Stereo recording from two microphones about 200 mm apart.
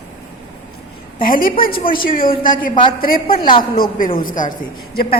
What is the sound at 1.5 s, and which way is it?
Speech, 45° left (ahead or behind).